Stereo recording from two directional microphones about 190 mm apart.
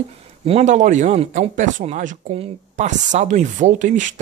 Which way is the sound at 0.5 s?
35° right (ahead or behind).